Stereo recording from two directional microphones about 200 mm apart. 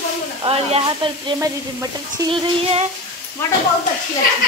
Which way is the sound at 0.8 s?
20° right (ahead or behind).